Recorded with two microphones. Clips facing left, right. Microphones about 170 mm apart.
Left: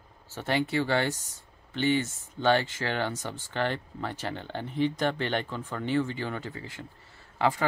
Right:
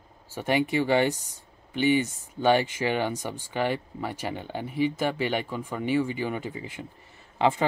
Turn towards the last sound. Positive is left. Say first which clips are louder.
# right 3 dB
turn(degrees=-20)  # may be behind; listen again after turning